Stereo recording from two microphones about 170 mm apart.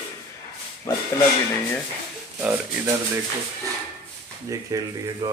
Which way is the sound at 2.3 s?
10° right (ahead or behind).